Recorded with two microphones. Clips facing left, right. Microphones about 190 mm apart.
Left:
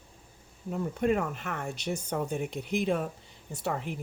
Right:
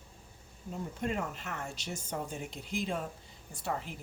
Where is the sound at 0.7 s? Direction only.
65° left (ahead or behind).